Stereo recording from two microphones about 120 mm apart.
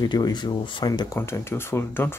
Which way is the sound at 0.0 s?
35° left (ahead or behind).